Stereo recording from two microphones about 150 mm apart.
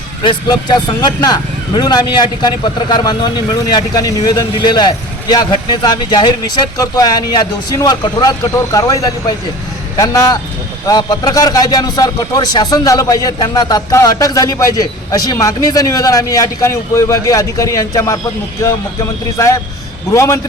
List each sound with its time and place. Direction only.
0.2 s a man's voice: 30° left (ahead or behind)
20.1 s a man's voice: 20° left (ahead or behind)